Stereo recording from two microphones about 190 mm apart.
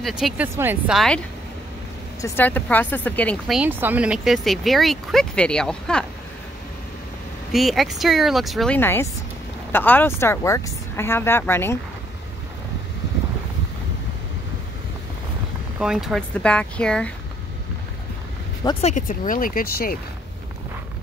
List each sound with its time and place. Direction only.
0.0 s speech: 5° right (ahead or behind)
2.2 s speech: 10° left (ahead or behind)
7.5 s speech: centre (ahead or behind)
15.8 s speech: centre (ahead or behind)
18.8 s speech: 40° left (ahead or behind)